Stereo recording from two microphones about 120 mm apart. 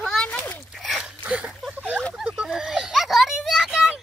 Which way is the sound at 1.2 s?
10° right (ahead or behind).